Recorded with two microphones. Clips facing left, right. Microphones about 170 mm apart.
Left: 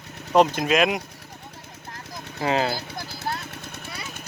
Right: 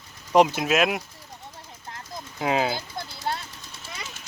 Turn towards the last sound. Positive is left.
turn(degrees=60)  # may be behind; listen again after turning